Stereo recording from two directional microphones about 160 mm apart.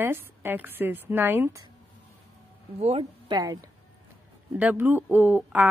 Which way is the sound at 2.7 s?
40° right (ahead or behind).